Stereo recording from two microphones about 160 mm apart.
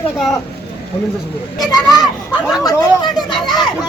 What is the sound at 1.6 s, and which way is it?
Speech, 25° left (ahead or behind).